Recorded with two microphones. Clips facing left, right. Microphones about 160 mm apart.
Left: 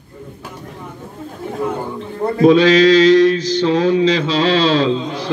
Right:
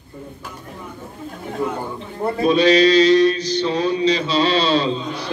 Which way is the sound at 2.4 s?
90° left.